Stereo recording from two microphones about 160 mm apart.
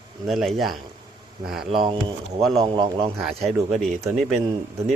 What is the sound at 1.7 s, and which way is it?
Speech, 30° right (ahead or behind).